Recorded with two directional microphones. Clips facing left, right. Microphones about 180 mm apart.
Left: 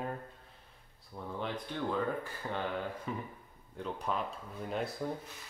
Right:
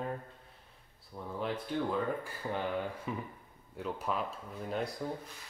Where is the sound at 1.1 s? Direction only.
5° left (ahead or behind).